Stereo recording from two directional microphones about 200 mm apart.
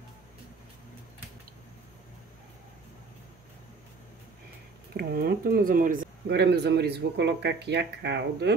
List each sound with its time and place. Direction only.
4.9 s speech: 50° right (ahead or behind)